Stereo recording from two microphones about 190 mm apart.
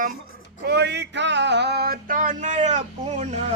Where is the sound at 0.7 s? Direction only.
60° right (ahead or behind).